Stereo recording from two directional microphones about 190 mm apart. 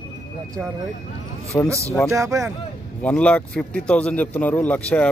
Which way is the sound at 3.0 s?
5° left (ahead or behind).